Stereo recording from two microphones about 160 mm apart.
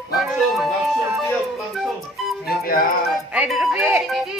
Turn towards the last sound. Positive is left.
turn(degrees=-5)  # may be behind; listen again after turning